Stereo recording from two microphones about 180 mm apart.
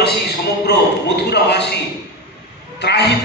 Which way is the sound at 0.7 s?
70° left (ahead or behind).